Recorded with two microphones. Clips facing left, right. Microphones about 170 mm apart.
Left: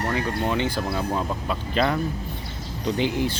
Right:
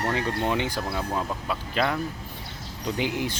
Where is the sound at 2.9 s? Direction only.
15° right (ahead or behind).